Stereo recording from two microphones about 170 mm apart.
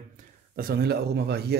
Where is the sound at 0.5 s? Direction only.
60° right (ahead or behind).